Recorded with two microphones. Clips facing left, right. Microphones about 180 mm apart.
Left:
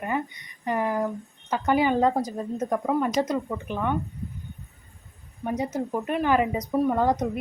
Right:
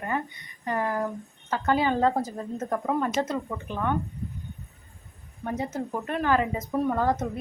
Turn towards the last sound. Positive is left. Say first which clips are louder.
# left 2 dB
turn(degrees=15)  # may be behind; listen again after turning